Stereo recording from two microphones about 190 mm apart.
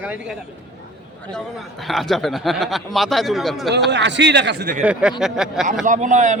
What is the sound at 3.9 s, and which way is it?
Speech, 65° right (ahead or behind).